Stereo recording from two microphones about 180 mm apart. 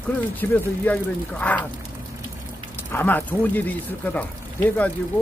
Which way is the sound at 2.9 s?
10° left (ahead or behind).